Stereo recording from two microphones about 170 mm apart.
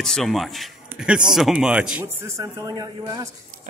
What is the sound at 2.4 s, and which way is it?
Speech, 20° right (ahead or behind).